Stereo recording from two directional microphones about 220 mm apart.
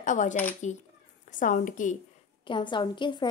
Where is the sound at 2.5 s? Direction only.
20° left (ahead or behind).